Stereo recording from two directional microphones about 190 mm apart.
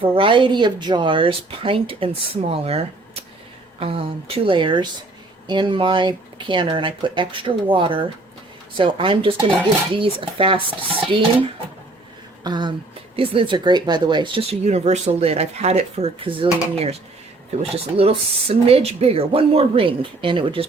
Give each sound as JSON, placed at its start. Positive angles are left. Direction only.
{"t": 0.0, "sound": "speech", "side_deg": -30}